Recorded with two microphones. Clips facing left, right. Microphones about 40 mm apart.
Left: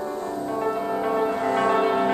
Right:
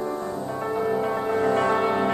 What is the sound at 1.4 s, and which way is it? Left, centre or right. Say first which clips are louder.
Music: right 1 dB; centre.